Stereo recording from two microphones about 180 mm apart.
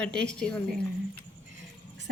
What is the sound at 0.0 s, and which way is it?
Speech, 5° left (ahead or behind).